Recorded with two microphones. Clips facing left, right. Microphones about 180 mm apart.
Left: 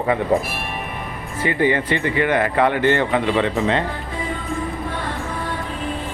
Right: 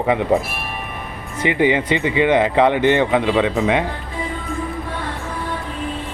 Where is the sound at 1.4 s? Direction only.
20° right (ahead or behind).